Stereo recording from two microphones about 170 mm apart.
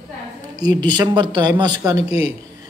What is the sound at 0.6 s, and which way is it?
Speech, 25° right (ahead or behind).